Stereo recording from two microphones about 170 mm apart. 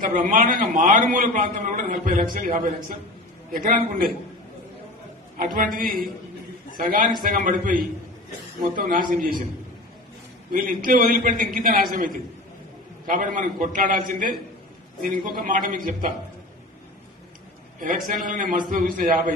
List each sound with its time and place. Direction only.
0.0 s a man's voice: 50° right (ahead or behind)
5.4 s a man's voice: 55° right (ahead or behind)
10.5 s a man's voice: 55° right (ahead or behind)
17.7 s a man's voice: 50° right (ahead or behind)